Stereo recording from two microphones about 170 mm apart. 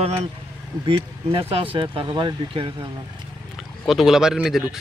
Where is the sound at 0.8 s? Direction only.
30° right (ahead or behind).